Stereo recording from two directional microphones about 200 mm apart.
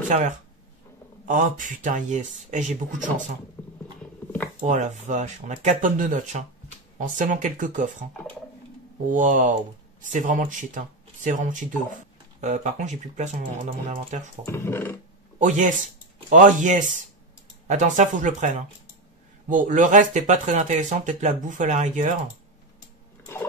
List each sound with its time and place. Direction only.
1.2 s speech: 40° right (ahead or behind)
3.6 s a sound: 5° left (ahead or behind)
4.6 s speech: 35° right (ahead or behind)
9.1 s speech: 40° right (ahead or behind)
14.4 s speech: 10° left (ahead or behind)
15.3 s speech: 40° right (ahead or behind)